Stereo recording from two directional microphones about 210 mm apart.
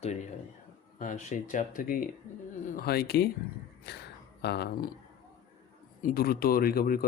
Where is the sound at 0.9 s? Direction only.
35° left (ahead or behind).